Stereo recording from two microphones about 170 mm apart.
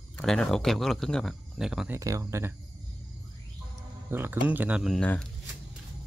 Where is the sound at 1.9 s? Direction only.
20° right (ahead or behind).